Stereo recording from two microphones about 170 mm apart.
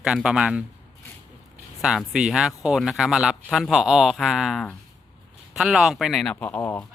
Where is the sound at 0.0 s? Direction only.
5° right (ahead or behind).